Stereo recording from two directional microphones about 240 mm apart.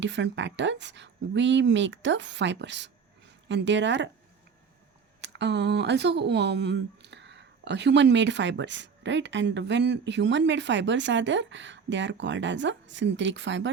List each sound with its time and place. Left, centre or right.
0.0 s speech: right
5.2 s speech: right